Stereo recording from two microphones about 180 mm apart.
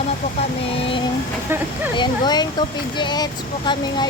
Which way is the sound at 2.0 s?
25° left (ahead or behind).